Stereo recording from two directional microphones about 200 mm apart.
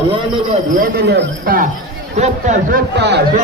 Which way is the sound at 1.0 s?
50° right (ahead or behind).